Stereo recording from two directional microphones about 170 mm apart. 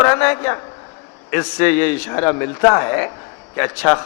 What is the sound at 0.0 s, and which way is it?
A man's voice, 15° left (ahead or behind).